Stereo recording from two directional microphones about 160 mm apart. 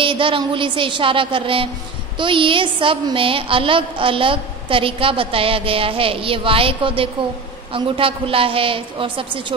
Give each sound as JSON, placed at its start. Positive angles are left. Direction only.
{"t": 0.0, "sound": "a woman's voice", "side_deg": -30}